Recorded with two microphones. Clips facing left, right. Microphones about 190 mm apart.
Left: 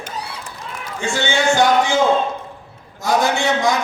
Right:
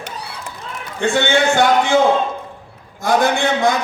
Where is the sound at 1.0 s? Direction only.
60° right (ahead or behind).